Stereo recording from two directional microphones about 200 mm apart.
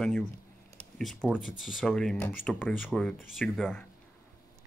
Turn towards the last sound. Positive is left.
turn(degrees=5)  # may be behind; listen again after turning